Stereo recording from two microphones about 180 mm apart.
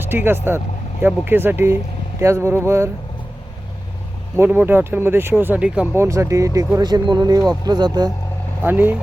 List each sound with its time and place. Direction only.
0.0 s speech: 10° right (ahead or behind)
4.4 s speech: 10° right (ahead or behind)
8.6 s speech: 10° right (ahead or behind)